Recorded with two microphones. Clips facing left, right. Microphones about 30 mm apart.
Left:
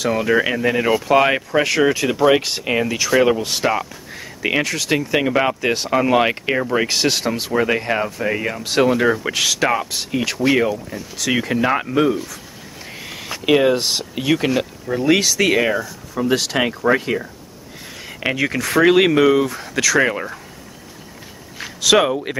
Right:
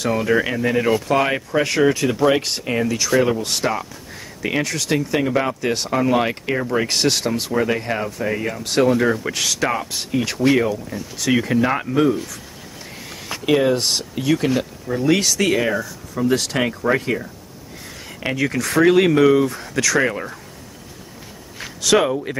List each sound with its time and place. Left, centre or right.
0.0 s speech: centre
2.6 s speech: left
3.0 s speech: centre
3.7 s speech: centre
5.2 s speech: left
6.9 s speech: centre
12.9 s a sound: left
13.5 s speech: centre
13.7 s speech: centre
14.1 s speech: centre
18.4 s speech: centre
18.9 s speech: left
21.5 s a sound: centre